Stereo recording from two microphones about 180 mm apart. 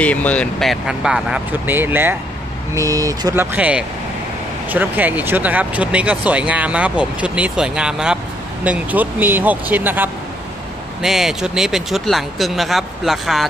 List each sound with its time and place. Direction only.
0.0 s speech: 5° left (ahead or behind); by 3.4 s 20° right (ahead or behind)
3.5 s speech: 5° right (ahead or behind)